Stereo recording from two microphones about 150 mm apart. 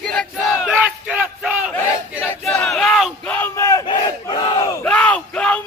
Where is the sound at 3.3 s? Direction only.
15° left (ahead or behind).